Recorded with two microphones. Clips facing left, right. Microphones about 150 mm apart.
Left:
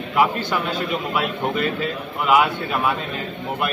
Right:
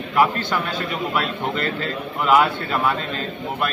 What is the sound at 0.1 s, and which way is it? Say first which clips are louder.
Speech: even; 10° left (ahead or behind).